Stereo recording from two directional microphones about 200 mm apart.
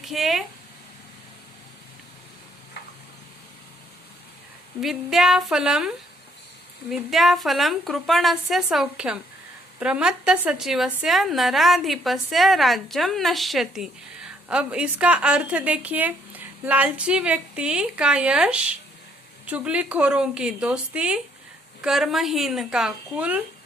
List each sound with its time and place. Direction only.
0.0 s a sound: centre (ahead or behind)
4.8 s a woman's voice: centre (ahead or behind)
6.9 s a woman's voice: centre (ahead or behind)